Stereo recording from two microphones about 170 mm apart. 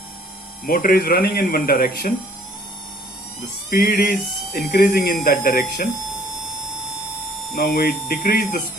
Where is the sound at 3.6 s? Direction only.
60° left (ahead or behind).